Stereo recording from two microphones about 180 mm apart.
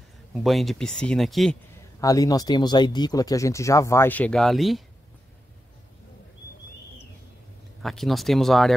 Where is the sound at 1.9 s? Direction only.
20° left (ahead or behind); by 4.8 s centre (ahead or behind).